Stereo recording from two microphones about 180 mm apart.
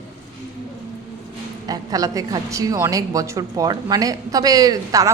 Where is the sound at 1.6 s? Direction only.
20° right (ahead or behind).